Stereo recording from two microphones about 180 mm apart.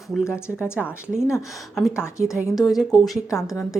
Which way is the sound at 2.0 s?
15° left (ahead or behind).